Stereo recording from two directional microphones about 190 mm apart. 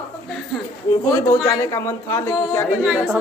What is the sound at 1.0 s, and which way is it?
A man's voice, 20° left (ahead or behind).